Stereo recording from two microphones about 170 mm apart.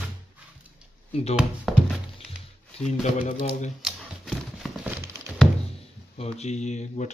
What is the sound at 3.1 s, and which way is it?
Speech, 45° left (ahead or behind).